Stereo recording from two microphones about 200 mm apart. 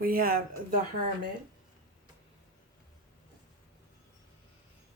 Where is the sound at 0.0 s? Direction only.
45° right (ahead or behind).